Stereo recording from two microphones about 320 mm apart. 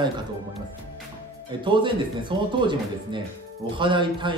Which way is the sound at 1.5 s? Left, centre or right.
Centre.